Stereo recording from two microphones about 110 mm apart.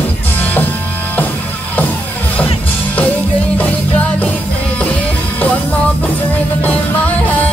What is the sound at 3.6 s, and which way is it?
Music, 15° left (ahead or behind).